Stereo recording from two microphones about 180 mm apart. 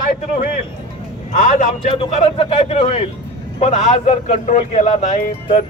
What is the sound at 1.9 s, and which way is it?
A man's voice, 30° left (ahead or behind).